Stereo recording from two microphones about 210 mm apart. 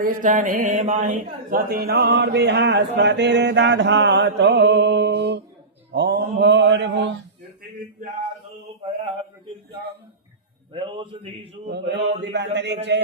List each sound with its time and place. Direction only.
0.0 s speech: 40° right (ahead or behind)
5.9 s mantra: 50° right (ahead or behind)
10.7 s mantra: 25° right (ahead or behind)
11.7 s mantra: 55° right (ahead or behind)
12.2 s speech: 55° right (ahead or behind)
12.5 s mantra: 55° right (ahead or behind)